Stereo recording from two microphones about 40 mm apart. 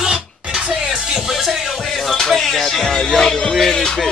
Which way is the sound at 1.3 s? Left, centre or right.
Centre.